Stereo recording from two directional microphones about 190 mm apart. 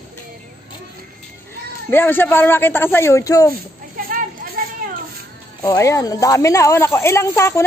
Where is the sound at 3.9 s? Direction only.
50° right (ahead or behind).